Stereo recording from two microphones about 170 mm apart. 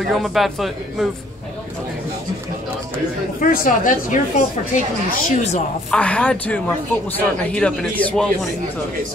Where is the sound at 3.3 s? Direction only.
55° left (ahead or behind).